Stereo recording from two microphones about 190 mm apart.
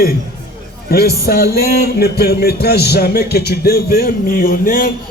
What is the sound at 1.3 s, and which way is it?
A man's voice, 55° left (ahead or behind).